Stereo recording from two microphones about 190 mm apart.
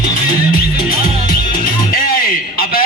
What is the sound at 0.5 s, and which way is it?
Music, 50° left (ahead or behind).